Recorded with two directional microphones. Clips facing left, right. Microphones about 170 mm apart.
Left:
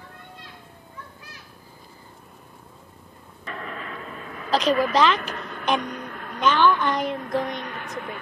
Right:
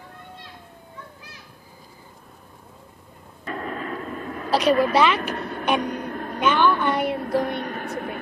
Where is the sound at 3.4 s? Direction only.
40° right (ahead or behind).